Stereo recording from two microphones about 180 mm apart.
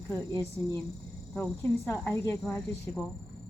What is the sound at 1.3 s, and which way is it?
Speech, 10° left (ahead or behind).